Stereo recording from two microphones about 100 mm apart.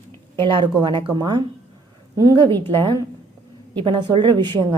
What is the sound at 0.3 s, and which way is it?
A woman's voice, 55° right (ahead or behind).